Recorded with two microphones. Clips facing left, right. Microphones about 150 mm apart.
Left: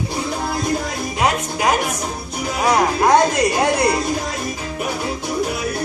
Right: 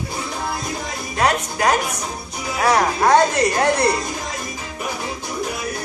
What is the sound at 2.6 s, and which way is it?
Speech, 10° left (ahead or behind).